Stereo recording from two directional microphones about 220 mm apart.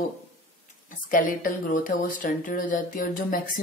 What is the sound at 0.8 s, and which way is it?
Speech, 40° left (ahead or behind).